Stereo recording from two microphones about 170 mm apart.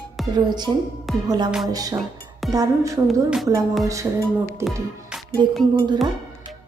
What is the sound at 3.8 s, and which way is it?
Speech, 20° right (ahead or behind).